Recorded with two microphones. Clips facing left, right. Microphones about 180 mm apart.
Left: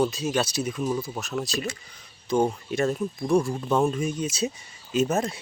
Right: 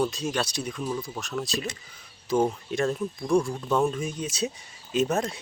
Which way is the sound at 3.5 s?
20° left (ahead or behind).